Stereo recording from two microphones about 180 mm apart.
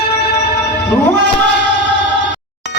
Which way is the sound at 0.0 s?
65° left (ahead or behind).